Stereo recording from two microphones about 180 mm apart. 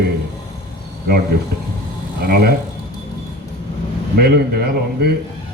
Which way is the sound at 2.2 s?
60° right (ahead or behind).